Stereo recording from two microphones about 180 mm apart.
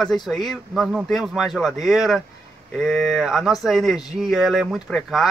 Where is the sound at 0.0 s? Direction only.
Centre (ahead or behind).